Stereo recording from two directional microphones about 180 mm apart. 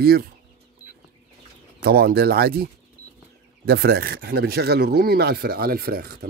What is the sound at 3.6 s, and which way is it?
Speech, 60° right (ahead or behind).